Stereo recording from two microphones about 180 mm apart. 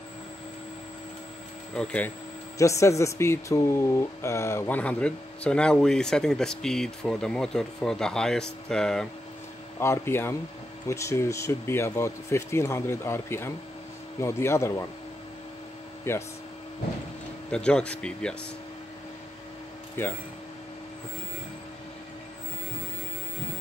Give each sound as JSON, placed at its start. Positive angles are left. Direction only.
{"t": 1.7, "sound": "speech", "side_deg": 5}
{"t": 9.8, "sound": "speech", "side_deg": 15}
{"t": 16.0, "sound": "speech", "side_deg": 15}
{"t": 17.5, "sound": "speech", "side_deg": 5}
{"t": 20.0, "sound": "speech", "side_deg": 10}